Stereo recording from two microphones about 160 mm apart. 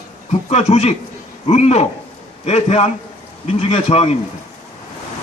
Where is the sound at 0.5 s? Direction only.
40° left (ahead or behind).